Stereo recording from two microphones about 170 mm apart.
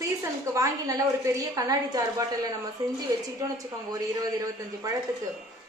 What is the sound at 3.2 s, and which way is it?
A woman's voice, 20° right (ahead or behind).